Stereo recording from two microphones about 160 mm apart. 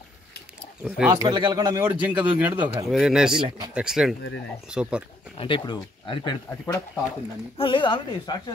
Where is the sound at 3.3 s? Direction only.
30° right (ahead or behind).